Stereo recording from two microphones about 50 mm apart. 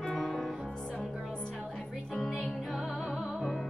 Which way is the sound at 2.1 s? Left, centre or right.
Centre.